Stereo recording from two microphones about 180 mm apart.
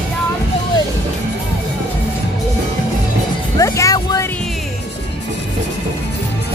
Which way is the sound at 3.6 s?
15° left (ahead or behind).